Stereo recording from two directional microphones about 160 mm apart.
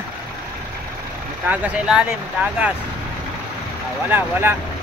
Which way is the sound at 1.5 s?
5° right (ahead or behind).